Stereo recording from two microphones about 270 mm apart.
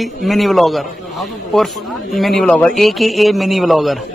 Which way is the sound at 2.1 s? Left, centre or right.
Centre.